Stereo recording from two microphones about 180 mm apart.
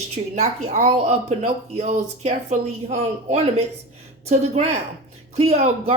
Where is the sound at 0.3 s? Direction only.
40° right (ahead or behind).